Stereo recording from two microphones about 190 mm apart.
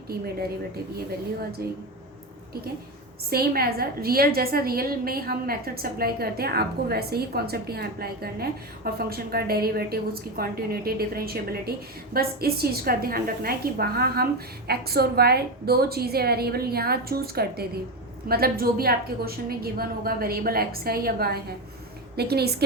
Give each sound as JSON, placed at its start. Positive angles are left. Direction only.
{"t": 1.6, "sound": "a woman's voice", "side_deg": -55}
{"t": 3.2, "sound": "a woman's voice", "side_deg": -55}